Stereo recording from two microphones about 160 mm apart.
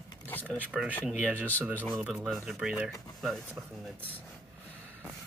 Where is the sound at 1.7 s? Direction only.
10° left (ahead or behind).